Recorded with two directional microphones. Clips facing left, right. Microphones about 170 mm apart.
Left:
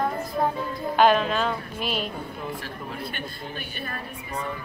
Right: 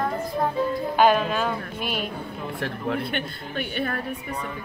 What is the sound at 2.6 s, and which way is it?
Speech, 65° right (ahead or behind).